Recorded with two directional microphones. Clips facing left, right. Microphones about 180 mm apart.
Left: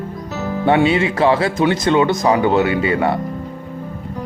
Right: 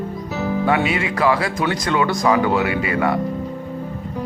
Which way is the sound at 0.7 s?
25° left (ahead or behind).